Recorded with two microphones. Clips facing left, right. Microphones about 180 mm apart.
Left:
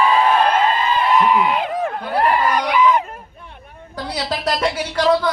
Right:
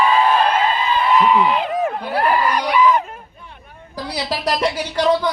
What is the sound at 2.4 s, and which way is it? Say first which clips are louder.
Screaming: even; centre (ahead or behind).